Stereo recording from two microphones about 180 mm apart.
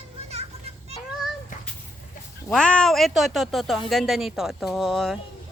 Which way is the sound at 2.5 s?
5° left (ahead or behind).